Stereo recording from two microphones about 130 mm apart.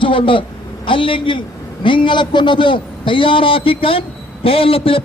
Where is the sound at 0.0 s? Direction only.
40° left (ahead or behind).